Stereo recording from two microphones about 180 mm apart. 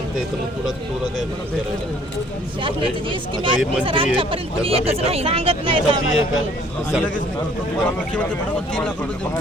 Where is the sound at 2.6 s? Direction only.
30° right (ahead or behind).